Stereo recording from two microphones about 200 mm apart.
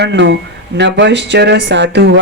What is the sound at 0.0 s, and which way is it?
Speech, 60° right (ahead or behind).